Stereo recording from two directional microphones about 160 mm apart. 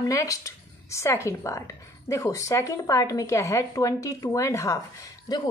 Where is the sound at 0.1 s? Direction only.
20° left (ahead or behind).